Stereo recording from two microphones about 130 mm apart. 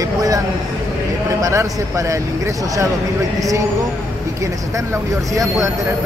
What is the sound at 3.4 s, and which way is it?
Speech, 25° right (ahead or behind).